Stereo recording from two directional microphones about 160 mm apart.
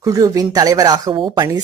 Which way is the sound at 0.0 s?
20° right (ahead or behind).